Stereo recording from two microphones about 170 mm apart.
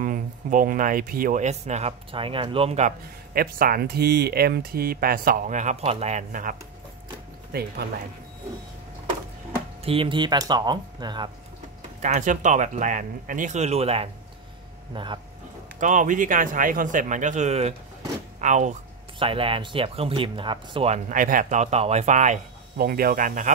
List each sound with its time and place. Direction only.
0.0 s speech: 50° right (ahead or behind)
3.3 s speech: 60° right (ahead or behind)
9.8 s speech: 30° right (ahead or behind)
12.0 s speech: 45° right (ahead or behind); by 15.1 s 25° right (ahead or behind)
15.8 s speech: 50° right (ahead or behind)
19.1 s speech: 30° right (ahead or behind)
22.8 s speech: 60° right (ahead or behind)